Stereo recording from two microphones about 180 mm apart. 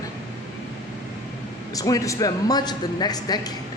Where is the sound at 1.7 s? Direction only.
20° left (ahead or behind).